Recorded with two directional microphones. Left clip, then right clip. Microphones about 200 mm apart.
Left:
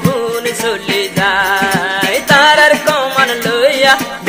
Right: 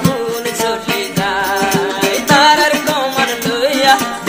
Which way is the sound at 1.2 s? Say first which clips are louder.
Left 4 dB; 15° left (ahead or behind).